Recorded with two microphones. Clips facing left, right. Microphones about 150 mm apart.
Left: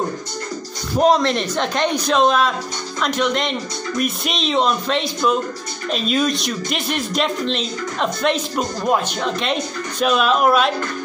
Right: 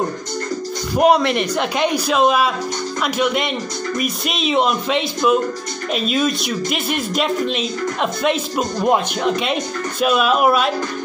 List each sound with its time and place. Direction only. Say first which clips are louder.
0.9 s speech: right 1 dB; 10° right (ahead or behind)
8.8 s speech: right 3 dB; 20° right (ahead or behind)
9.4 s speech: right 1 dB; 5° right (ahead or behind)